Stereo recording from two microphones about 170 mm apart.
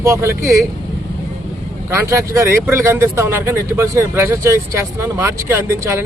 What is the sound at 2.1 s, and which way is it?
Speech, 15° right (ahead or behind).